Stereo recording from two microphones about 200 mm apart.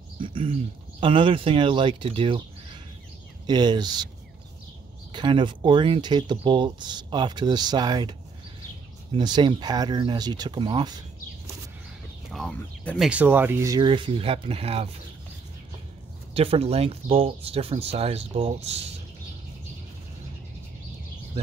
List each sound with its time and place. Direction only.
0.2 s speech: 25° right (ahead or behind)
5.1 s speech: 25° right (ahead or behind)
12.3 s speech: 5° left (ahead or behind)
13.1 s speech: 10° right (ahead or behind); by 14.9 s 30° right (ahead or behind)
16.3 s speech: 30° right (ahead or behind)